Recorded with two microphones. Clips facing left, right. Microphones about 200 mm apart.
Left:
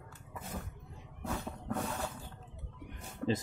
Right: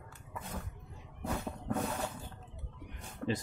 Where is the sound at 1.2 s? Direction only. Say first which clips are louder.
Right 2 dB; 15° right (ahead or behind).